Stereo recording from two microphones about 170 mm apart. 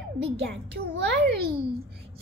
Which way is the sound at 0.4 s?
85° right.